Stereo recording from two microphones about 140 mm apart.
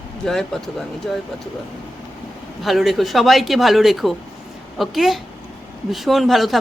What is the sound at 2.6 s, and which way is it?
Speech, centre (ahead or behind).